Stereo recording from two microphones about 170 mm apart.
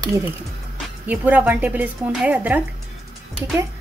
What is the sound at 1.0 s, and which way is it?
Speech, 10° right (ahead or behind).